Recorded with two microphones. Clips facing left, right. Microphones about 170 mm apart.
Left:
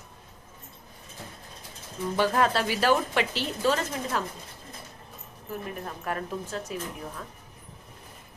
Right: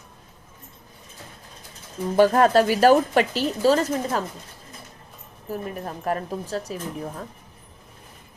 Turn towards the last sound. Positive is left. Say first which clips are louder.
# right 5 dB
turn(degrees=-35)  # may be behind; listen again after turning